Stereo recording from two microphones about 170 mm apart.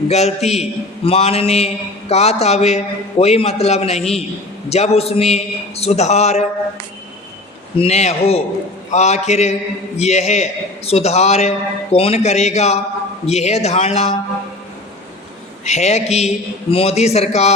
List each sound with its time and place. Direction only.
0.1 s a man's voice: 40° left (ahead or behind)
7.8 s a man's voice: 40° left (ahead or behind)
15.6 s a man's voice: 40° left (ahead or behind)